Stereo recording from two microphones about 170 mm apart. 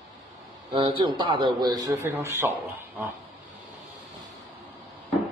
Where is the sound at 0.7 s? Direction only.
30° right (ahead or behind).